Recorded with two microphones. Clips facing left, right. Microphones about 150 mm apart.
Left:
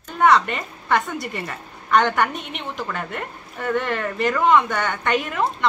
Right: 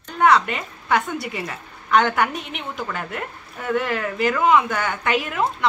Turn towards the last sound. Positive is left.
turn(degrees=0)  # may be behind; listen again after turning